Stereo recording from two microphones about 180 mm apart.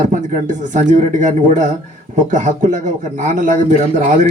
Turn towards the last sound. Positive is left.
turn(degrees=-45)  # may be behind; listen again after turning